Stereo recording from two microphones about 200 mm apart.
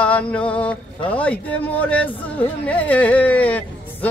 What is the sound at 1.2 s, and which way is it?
Speech, 5° left (ahead or behind).